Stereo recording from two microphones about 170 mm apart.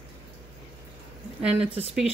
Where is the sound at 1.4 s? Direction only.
5° right (ahead or behind).